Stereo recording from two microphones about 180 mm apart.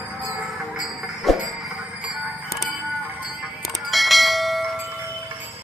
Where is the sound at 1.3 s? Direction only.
Centre (ahead or behind).